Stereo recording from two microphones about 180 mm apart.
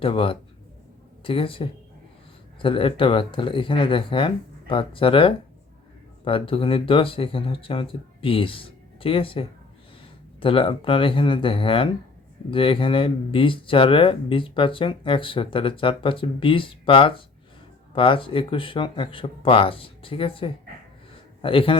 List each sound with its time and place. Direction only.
0.0 s speech: 30° left (ahead or behind)